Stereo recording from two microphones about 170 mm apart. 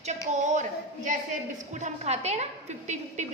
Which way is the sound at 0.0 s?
45° right (ahead or behind).